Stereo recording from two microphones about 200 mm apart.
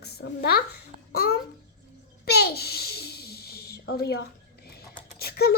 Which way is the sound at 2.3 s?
55° left (ahead or behind).